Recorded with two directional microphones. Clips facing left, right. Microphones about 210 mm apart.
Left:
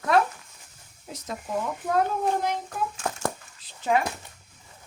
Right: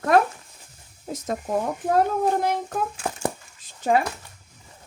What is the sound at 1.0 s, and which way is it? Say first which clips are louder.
Speech: right 7 dB; 45° right (ahead or behind).